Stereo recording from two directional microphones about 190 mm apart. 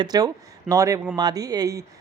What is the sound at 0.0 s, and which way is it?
A woman's voice, 20° right (ahead or behind).